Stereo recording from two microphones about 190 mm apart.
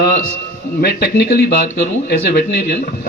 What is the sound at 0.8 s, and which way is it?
A man's voice, 55° left (ahead or behind).